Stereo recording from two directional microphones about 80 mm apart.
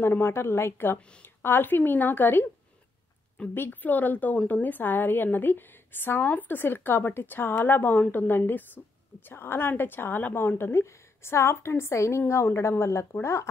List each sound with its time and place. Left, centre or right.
0.0 s a woman's voice: left
3.5 s a woman's voice: left